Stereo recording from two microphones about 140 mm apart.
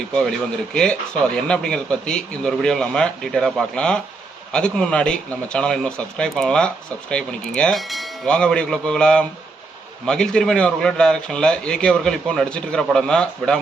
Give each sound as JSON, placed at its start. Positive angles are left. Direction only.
{"t": 0.1, "sound": "a man's voice", "side_deg": 5}